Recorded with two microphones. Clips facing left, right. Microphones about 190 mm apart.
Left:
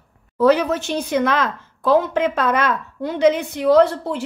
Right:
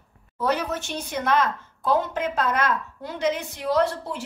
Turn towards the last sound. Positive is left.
turn(degrees=65)  # may be behind; listen again after turning